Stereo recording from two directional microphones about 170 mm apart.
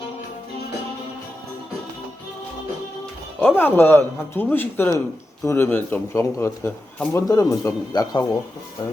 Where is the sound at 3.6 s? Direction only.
10° left (ahead or behind).